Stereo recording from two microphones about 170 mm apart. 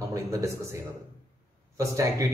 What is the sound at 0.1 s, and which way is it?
Speech, 15° right (ahead or behind).